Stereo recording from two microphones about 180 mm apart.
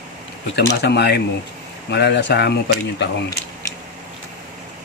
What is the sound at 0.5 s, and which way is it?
Speech, 70° left (ahead or behind).